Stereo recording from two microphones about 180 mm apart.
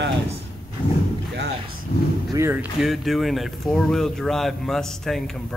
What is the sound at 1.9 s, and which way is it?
Speech, 50° left (ahead or behind).